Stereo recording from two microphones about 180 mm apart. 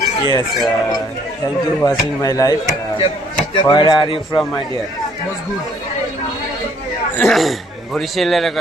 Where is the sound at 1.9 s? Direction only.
20° left (ahead or behind).